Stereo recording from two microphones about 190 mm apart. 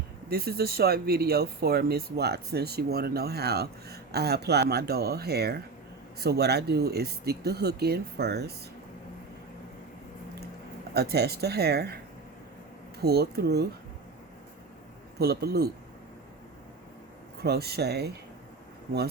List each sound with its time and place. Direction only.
0.3 s speech: 55° right (ahead or behind)
10.9 s speech: 60° right (ahead or behind)
13.0 s speech: 55° right (ahead or behind)
15.2 s speech: 55° right (ahead or behind)
17.4 s speech: 60° right (ahead or behind)